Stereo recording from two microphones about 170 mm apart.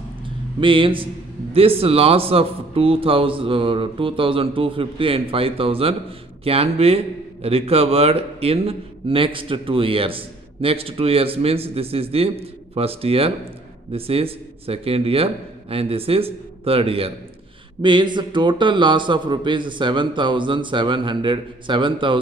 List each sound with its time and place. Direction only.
0.6 s a man's voice: 30° right (ahead or behind)